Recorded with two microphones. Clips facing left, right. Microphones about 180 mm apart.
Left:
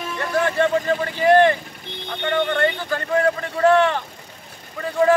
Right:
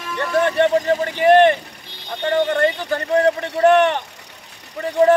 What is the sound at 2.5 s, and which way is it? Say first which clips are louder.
Speech: right 3 dB; 20° right (ahead or behind).